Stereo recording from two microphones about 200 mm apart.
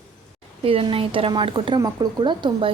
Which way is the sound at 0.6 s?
30° right (ahead or behind).